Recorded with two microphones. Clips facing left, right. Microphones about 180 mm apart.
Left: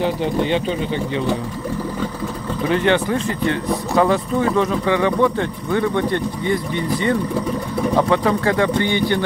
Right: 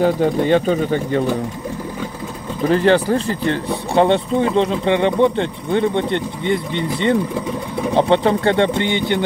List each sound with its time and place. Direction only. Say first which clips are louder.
0.0 s speech: right 4 dB; 45° right (ahead or behind)
2.7 s speech: right 3 dB; 35° right (ahead or behind)